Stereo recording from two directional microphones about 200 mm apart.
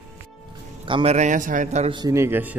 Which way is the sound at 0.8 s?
30° right (ahead or behind).